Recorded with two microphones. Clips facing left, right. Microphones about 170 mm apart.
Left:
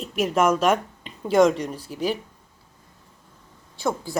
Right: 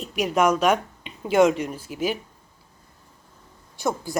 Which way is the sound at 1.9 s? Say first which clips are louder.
Right 1 dB; 10° right (ahead or behind).